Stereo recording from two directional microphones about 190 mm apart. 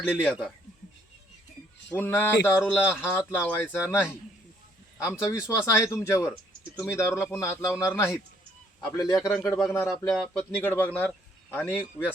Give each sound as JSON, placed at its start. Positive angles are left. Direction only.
{"t": 0.1, "sound": "speech", "side_deg": 5}
{"t": 1.9, "sound": "a man's voice", "side_deg": 10}
{"t": 9.3, "sound": "speech", "side_deg": 0}